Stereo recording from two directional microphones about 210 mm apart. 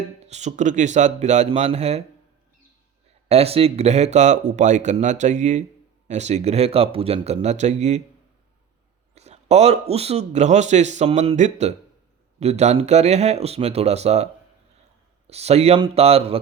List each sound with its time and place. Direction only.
0.2 s speech: 30° right (ahead or behind)
3.2 s speech: 30° right (ahead or behind)
9.1 s a sound: 30° right (ahead or behind)
9.9 s speech: 30° right (ahead or behind)
15.3 s speech: 30° right (ahead or behind)